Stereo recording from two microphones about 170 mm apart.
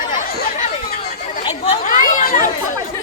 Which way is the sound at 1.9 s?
55° left (ahead or behind).